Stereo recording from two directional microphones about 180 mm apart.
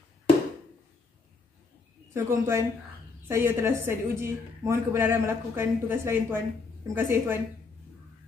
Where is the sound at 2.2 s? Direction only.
15° right (ahead or behind).